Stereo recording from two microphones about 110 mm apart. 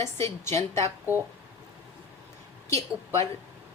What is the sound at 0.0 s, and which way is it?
Speech, 25° left (ahead or behind).